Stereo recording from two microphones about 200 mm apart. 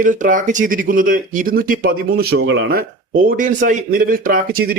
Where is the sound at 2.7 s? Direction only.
45° right (ahead or behind).